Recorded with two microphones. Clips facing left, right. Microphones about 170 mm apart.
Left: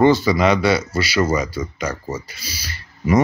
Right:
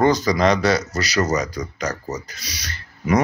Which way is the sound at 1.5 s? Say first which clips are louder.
Left 1 dB; 5° left (ahead or behind).